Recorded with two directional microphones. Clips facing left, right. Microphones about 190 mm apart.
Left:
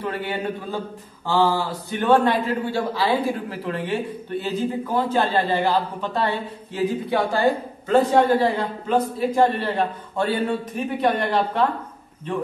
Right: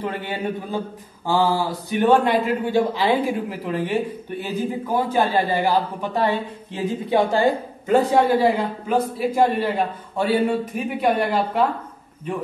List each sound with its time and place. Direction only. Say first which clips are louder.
0.0 s a man's voice: even; 20° right (ahead or behind)
1.9 s a man's voice: right 1 dB; 15° right (ahead or behind)